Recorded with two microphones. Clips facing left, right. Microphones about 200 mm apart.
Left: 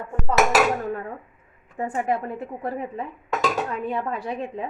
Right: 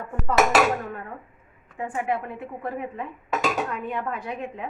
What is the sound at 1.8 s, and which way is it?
Speech, 40° left (ahead or behind).